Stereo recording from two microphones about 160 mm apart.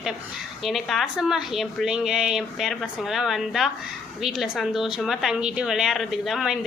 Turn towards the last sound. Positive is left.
turn(degrees=0)  # may be behind; listen again after turning